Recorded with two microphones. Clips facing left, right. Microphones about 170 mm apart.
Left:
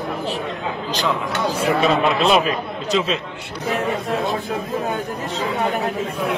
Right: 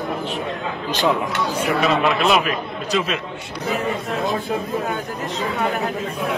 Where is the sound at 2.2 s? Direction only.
30° left (ahead or behind).